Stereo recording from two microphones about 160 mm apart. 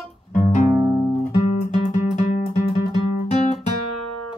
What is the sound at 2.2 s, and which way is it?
Music, 35° left (ahead or behind).